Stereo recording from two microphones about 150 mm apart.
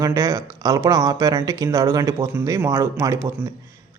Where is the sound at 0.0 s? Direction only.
20° right (ahead or behind).